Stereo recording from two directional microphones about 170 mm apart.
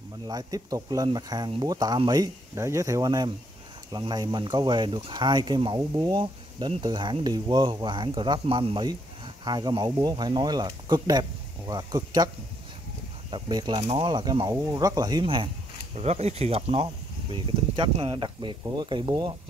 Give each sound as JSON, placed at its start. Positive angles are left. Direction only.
{"t": 0.3, "sound": "speech", "side_deg": -20}
{"t": 13.3, "sound": "speech", "side_deg": -25}